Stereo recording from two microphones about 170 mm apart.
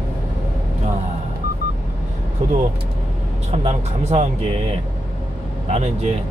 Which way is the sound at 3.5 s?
40° right (ahead or behind).